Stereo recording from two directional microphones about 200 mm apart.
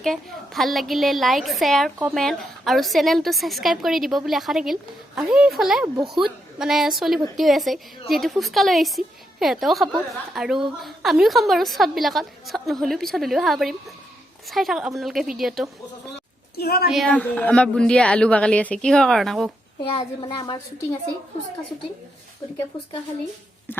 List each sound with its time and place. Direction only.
0.0 s a woman's voice: centre (ahead or behind)
16.6 s a woman's voice: 50° left (ahead or behind)
16.9 s a woman's voice: 5° left (ahead or behind)
20.2 s a woman's voice: 25° left (ahead or behind)